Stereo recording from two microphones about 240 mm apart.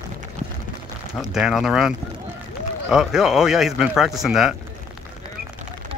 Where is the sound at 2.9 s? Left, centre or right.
Centre.